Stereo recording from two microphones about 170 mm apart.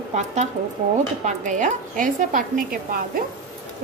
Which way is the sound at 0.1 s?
40° right (ahead or behind).